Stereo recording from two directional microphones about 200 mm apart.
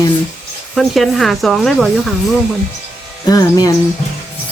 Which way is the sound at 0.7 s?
Centre (ahead or behind).